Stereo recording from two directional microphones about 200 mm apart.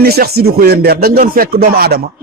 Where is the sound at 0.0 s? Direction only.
50° right (ahead or behind).